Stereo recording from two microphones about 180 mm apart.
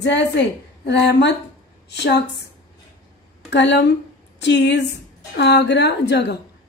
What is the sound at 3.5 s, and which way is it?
A woman's voice, 75° left (ahead or behind).